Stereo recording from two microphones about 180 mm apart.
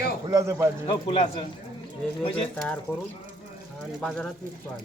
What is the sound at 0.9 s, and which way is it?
Speech, 30° left (ahead or behind).